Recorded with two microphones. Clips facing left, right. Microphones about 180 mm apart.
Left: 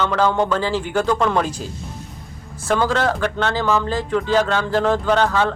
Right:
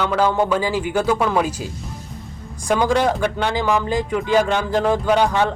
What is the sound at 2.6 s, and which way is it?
Speech, 15° right (ahead or behind).